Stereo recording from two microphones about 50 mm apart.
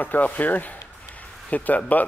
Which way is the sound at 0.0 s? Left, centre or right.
Left.